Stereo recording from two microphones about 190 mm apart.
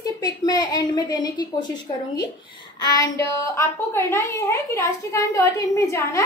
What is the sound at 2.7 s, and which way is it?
Child singing, 20° left (ahead or behind).